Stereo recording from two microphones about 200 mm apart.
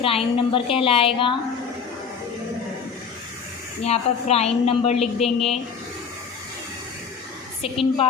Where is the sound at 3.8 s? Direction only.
30° left (ahead or behind).